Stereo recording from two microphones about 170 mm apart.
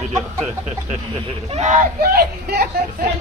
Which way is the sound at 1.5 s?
45° right (ahead or behind).